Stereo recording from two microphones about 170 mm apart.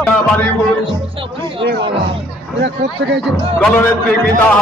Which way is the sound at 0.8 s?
30° right (ahead or behind).